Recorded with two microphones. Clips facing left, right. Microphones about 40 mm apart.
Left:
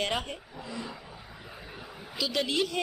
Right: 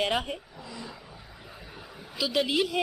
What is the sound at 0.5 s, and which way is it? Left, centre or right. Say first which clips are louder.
Vehicle: left 3 dB; centre.